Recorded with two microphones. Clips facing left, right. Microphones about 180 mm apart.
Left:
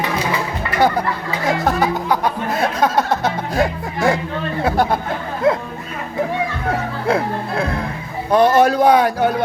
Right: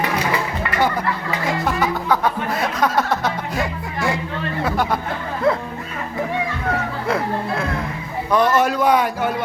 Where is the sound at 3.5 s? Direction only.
40° left (ahead or behind).